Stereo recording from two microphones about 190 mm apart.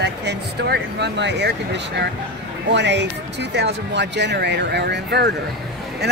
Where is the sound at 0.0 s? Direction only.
65° right (ahead or behind).